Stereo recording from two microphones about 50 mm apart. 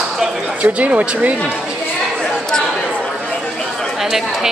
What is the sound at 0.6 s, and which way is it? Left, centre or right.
Speech, right.